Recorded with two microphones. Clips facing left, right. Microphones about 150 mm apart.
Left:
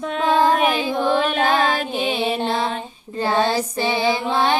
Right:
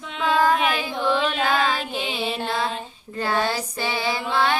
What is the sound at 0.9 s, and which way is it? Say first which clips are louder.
Carnatic music: left 4 dB; 45° left (ahead or behind).